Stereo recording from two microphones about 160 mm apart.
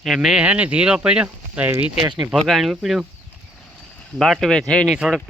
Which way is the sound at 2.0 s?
25° right (ahead or behind).